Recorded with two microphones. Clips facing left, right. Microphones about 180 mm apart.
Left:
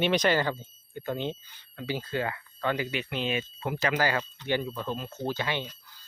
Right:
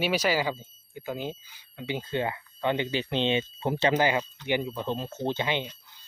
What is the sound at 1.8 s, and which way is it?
Speech, 20° right (ahead or behind).